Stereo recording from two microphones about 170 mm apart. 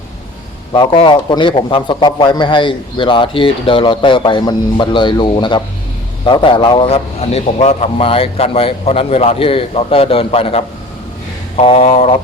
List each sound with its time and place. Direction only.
0.7 s a man's voice: 30° left (ahead or behind)